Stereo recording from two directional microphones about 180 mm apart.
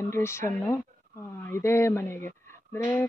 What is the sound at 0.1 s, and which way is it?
Speech, 15° left (ahead or behind).